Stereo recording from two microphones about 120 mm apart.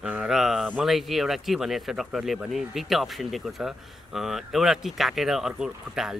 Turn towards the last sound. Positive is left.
turn(degrees=-5)  # may be behind; listen again after turning